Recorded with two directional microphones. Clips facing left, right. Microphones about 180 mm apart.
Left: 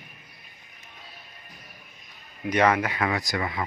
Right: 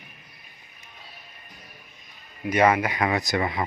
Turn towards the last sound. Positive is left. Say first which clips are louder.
# right 4 dB
turn(degrees=-25)  # may be behind; listen again after turning